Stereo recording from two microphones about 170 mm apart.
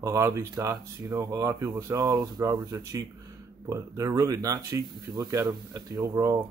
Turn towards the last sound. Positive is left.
turn(degrees=-20)  # may be behind; listen again after turning